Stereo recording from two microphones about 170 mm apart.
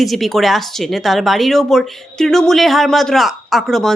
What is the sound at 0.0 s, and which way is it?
Speech, centre (ahead or behind).